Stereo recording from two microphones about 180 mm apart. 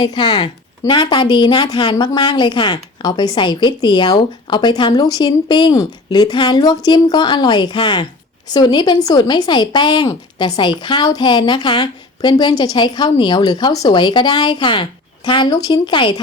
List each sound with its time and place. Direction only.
0.0 s speech: 25° left (ahead or behind)